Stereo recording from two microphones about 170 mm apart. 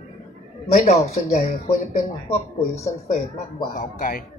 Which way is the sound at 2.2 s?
15° left (ahead or behind).